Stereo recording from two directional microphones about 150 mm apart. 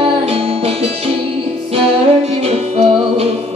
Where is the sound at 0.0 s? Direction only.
40° right (ahead or behind).